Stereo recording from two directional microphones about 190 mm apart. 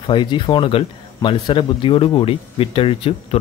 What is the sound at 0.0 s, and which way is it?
Speech, 25° left (ahead or behind).